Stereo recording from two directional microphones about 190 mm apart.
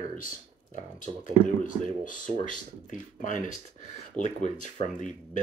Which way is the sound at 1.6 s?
45° left (ahead or behind).